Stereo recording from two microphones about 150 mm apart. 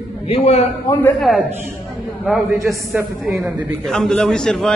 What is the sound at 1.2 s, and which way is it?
Speech, centre (ahead or behind).